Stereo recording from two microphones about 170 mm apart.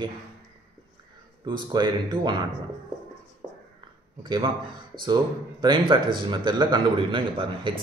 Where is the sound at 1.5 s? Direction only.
25° right (ahead or behind).